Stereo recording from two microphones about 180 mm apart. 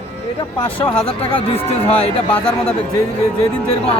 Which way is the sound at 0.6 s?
10° left (ahead or behind).